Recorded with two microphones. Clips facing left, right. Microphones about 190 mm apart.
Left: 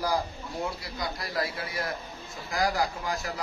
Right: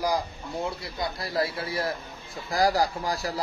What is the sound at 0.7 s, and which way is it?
A man's voice, 25° right (ahead or behind).